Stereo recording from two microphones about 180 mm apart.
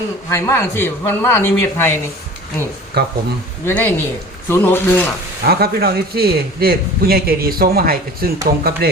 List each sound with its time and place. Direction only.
0.3 s a man's voice: 15° left (ahead or behind)
3.0 s a man's voice: 65° right (ahead or behind)
3.7 s a man's voice: 10° left (ahead or behind)
5.4 s a man's voice: 60° right (ahead or behind)